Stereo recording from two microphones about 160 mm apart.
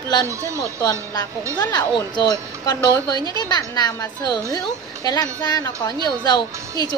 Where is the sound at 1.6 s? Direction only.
25° left (ahead or behind).